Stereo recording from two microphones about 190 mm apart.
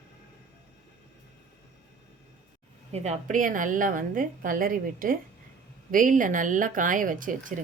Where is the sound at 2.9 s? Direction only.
35° right (ahead or behind).